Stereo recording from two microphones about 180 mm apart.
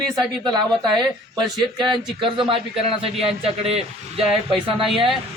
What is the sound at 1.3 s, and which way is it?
Speech, 25° right (ahead or behind).